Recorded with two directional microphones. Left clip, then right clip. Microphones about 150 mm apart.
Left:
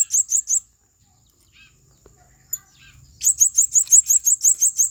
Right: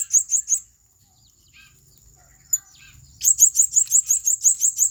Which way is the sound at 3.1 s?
10° left (ahead or behind).